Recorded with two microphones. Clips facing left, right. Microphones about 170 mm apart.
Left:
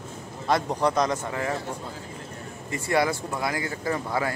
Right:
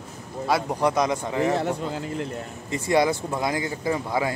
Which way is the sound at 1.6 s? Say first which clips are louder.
Right 8 dB; 75° right (ahead or behind).